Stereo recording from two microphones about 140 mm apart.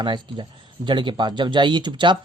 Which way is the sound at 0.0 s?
35° right (ahead or behind).